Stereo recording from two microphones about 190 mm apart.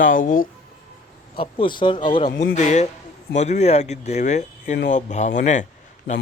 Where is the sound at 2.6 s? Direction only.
40° left (ahead or behind).